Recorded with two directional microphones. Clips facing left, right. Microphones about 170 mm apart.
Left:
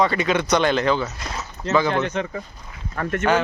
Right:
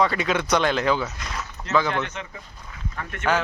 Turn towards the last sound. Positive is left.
turn(degrees=50)  # may be behind; listen again after turning